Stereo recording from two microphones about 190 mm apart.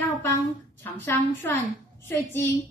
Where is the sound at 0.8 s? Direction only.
10° left (ahead or behind).